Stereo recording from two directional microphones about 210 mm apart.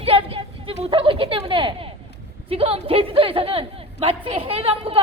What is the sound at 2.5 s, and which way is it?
A woman's voice, 25° right (ahead or behind).